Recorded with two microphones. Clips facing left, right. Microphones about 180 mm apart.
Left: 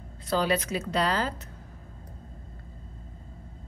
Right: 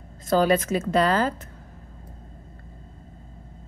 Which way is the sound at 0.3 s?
50° right (ahead or behind).